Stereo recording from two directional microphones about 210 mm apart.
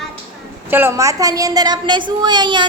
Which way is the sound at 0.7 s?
10° right (ahead or behind).